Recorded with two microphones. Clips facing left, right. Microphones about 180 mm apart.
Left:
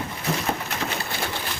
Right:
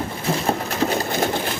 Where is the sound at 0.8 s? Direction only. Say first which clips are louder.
Right 12 dB; 40° right (ahead or behind).